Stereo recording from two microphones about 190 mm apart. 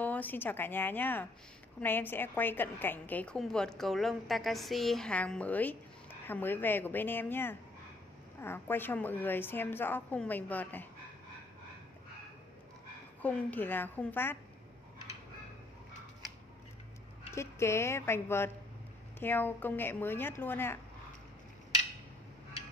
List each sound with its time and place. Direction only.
0.0 s a woman's voice: 10° left (ahead or behind)
13.2 s a woman's voice: 10° left (ahead or behind)
17.3 s a woman's voice: 15° left (ahead or behind)